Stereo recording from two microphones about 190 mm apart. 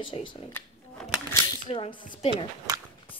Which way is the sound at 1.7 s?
30° left (ahead or behind).